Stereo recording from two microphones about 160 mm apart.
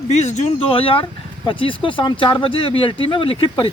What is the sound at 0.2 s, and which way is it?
Speech, 45° left (ahead or behind).